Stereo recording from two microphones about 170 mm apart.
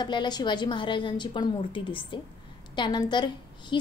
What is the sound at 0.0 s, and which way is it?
A woman's voice, 25° left (ahead or behind).